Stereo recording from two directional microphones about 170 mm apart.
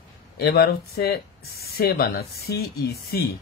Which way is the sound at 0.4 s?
65° left (ahead or behind).